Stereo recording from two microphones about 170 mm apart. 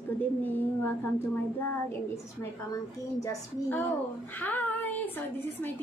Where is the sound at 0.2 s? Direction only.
10° left (ahead or behind).